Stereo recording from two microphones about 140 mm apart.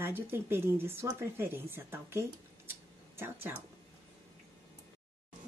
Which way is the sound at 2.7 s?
15° right (ahead or behind).